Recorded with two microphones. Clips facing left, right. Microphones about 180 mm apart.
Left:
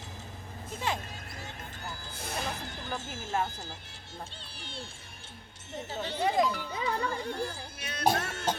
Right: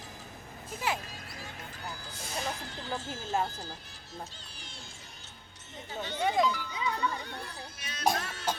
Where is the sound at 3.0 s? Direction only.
20° left (ahead or behind).